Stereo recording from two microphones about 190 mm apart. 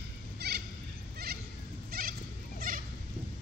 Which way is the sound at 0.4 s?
60° right (ahead or behind).